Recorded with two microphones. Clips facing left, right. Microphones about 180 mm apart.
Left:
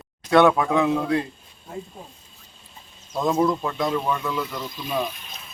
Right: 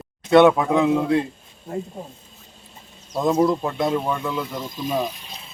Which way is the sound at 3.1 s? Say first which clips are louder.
Right 2 dB; 15° right (ahead or behind).